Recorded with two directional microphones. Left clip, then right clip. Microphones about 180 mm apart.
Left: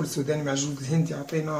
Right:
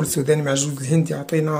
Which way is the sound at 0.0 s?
45° right (ahead or behind).